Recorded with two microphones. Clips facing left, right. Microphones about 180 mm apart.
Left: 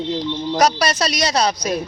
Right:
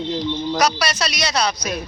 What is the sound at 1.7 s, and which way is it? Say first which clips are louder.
Speech: left 4 dB; 35° left (ahead or behind).